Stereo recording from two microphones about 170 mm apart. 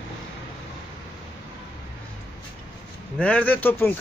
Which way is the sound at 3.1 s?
5° left (ahead or behind).